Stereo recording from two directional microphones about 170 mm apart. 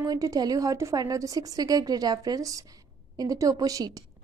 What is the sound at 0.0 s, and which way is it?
A woman's voice, 20° right (ahead or behind).